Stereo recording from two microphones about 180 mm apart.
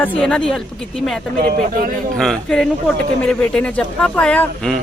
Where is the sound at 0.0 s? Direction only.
5° left (ahead or behind).